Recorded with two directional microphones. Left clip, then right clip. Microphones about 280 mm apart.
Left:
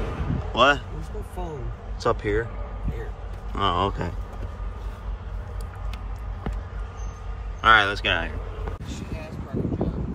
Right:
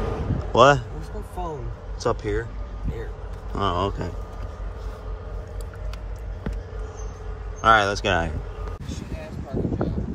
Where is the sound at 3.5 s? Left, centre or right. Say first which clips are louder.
Left 1 dB; centre.